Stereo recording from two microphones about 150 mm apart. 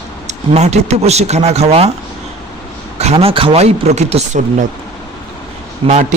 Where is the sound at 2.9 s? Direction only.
45° right (ahead or behind).